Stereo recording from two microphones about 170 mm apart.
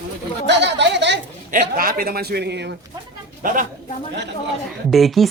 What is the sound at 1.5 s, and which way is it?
A man's voice, 60° right (ahead or behind).